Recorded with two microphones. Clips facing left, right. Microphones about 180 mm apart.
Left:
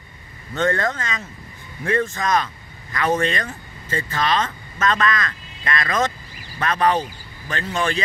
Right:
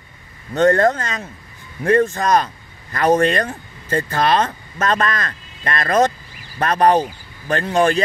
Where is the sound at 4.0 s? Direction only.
55° right (ahead or behind).